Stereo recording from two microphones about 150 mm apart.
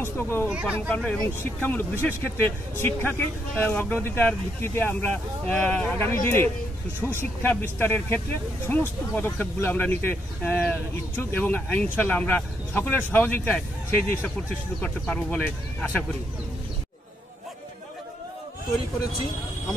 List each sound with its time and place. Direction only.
0.0 s speech: 15° left (ahead or behind)
0.5 s speech: 10° right (ahead or behind)
0.7 s speech: 10° left (ahead or behind)